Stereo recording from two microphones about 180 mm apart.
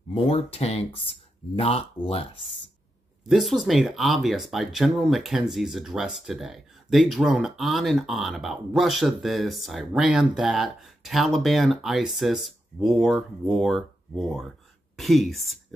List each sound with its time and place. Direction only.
0.1 s speech: 30° left (ahead or behind)
3.3 s speech: centre (ahead or behind)